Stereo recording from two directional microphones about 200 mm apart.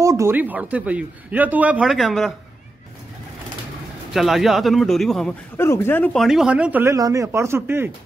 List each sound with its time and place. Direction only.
0.0 s speech: 15° right (ahead or behind)
4.1 s speech: centre (ahead or behind)
5.6 s speech: 10° left (ahead or behind); by 7.9 s 10° right (ahead or behind)